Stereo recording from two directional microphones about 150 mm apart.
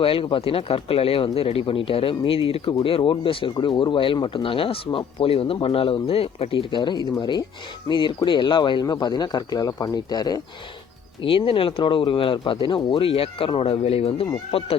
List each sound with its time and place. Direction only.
0.0 s speech: 35° left (ahead or behind)